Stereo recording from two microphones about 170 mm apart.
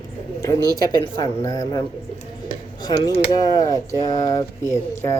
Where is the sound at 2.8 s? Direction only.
25° left (ahead or behind).